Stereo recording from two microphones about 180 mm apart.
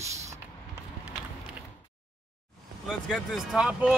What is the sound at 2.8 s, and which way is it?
Speech, centre (ahead or behind).